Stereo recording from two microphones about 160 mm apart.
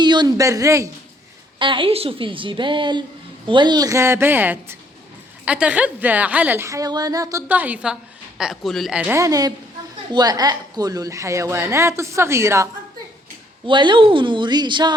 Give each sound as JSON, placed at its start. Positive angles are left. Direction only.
{"t": 0.0, "sound": "speech", "side_deg": -25}
{"t": 1.5, "sound": "a woman's voice", "side_deg": -30}
{"t": 7.4, "sound": "a woman's voice", "side_deg": -10}
{"t": 9.1, "sound": "a woman's voice", "side_deg": -20}
{"t": 13.7, "sound": "a woman's voice", "side_deg": -30}